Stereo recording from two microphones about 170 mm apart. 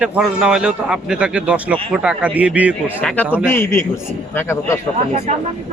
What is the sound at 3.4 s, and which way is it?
A man's voice, 15° left (ahead or behind).